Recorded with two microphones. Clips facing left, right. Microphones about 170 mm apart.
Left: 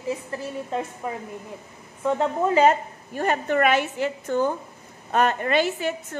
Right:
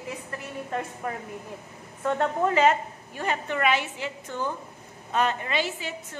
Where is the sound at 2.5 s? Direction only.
45° left (ahead or behind).